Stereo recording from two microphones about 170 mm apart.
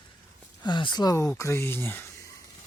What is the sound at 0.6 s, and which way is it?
Speech, 25° left (ahead or behind).